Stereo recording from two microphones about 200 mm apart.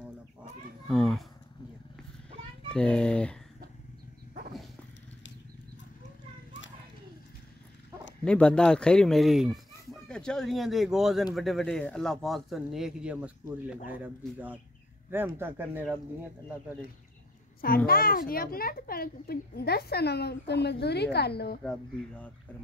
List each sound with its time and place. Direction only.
0.8 s a sound: centre (ahead or behind)
2.7 s speech: 5° left (ahead or behind)
8.3 s speech: 5° left (ahead or behind); by 16.0 s 10° right (ahead or behind)
17.8 s a child's voice: 45° left (ahead or behind)